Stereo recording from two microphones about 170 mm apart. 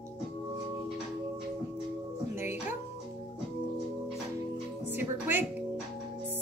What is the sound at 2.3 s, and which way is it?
Music, 15° right (ahead or behind).